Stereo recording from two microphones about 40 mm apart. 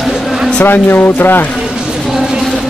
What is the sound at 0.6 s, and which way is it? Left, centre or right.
Speech, left.